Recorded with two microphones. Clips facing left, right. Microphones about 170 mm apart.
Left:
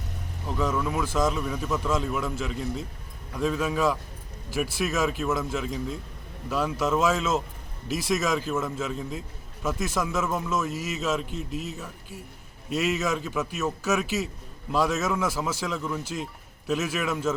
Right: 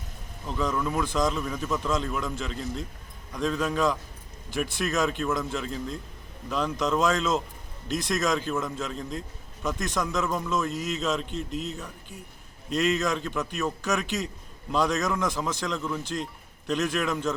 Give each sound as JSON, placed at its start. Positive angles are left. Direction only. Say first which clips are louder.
{"t": 0.4, "sound": "a man's voice", "louder": "left 1 dB", "side_deg": 5}